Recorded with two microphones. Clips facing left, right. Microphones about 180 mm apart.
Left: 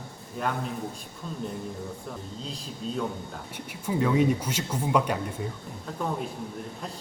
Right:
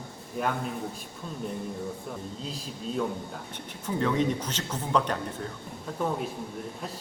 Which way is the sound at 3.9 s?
10° left (ahead or behind).